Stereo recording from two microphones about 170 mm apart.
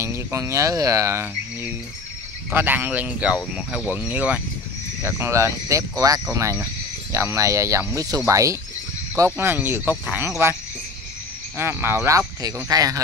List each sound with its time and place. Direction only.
0.0 s speech: 15° right (ahead or behind)
11.5 s speech: 15° right (ahead or behind)